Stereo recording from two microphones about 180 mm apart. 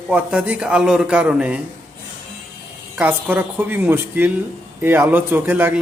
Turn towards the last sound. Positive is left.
turn(degrees=-10)  # may be behind; listen again after turning